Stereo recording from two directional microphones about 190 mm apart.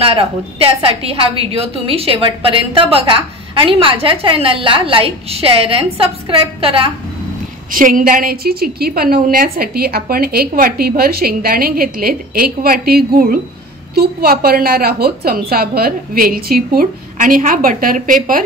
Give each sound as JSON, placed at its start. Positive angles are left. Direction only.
{"t": 0.0, "sound": "a woman's voice", "side_deg": -30}
{"t": 7.7, "sound": "a woman's voice", "side_deg": -45}